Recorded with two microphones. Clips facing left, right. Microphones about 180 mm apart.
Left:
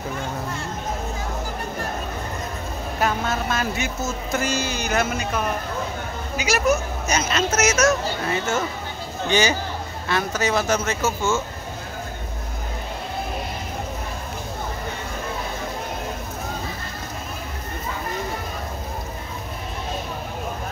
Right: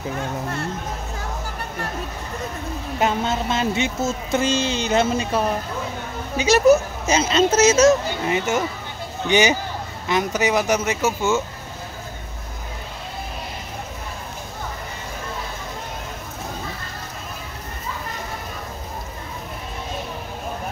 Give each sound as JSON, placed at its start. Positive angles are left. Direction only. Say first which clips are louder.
{"t": 3.0, "sound": "speech", "louder": "right 2 dB", "side_deg": -25}
{"t": 8.3, "sound": "speech", "louder": "right 4 dB", "side_deg": -15}